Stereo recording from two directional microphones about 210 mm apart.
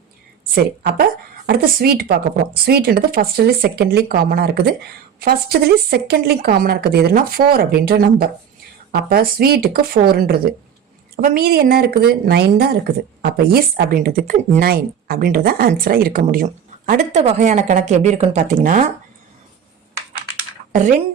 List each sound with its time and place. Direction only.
0.5 s a woman's voice: 45° right (ahead or behind)